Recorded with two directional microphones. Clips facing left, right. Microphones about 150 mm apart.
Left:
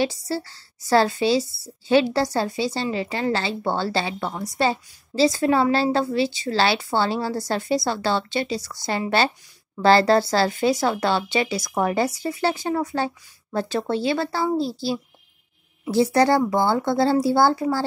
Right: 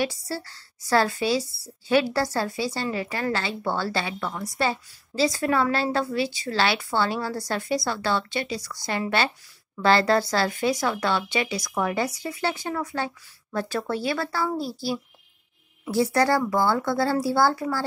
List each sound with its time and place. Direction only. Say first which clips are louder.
0.0 s speech: left 4 dB; 25° left (ahead or behind)